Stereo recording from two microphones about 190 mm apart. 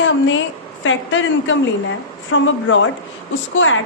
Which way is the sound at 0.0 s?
80° left.